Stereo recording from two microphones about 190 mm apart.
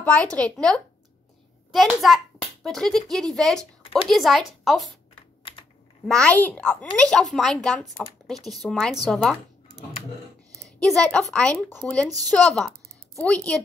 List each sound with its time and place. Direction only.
0.0 s a child's voice: 5° left (ahead or behind)
6.0 s speech: 5° left (ahead or behind)
10.6 s a woman's voice: centre (ahead or behind)